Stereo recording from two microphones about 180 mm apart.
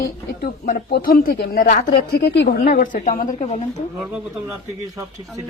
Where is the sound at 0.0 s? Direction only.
60° left (ahead or behind); by 3.8 s 40° left (ahead or behind).